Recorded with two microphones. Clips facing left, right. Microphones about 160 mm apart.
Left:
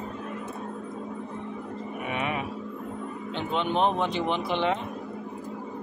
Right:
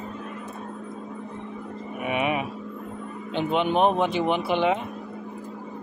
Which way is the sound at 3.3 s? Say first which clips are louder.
Right 5 dB; 15° right (ahead or behind).